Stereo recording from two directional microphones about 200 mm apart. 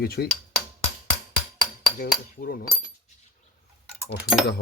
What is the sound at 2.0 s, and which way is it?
Speech, 45° left (ahead or behind).